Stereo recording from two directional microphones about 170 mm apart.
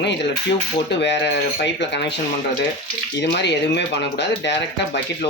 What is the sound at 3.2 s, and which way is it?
Speech, 90° left.